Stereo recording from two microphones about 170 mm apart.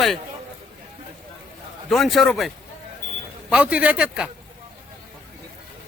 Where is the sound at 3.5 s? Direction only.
5° right (ahead or behind).